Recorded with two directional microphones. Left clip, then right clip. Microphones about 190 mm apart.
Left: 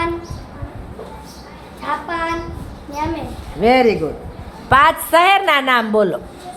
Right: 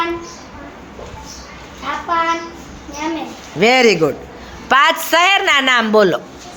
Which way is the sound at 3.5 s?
20° right (ahead or behind).